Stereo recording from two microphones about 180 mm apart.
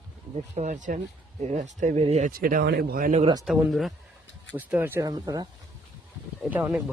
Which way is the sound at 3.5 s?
Centre (ahead or behind).